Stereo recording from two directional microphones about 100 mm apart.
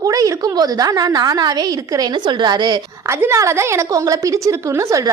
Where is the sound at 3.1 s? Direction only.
25° right (ahead or behind).